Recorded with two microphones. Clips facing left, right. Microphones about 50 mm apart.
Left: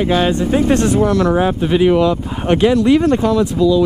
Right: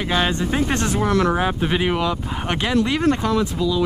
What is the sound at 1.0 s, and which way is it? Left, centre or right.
Speech, right.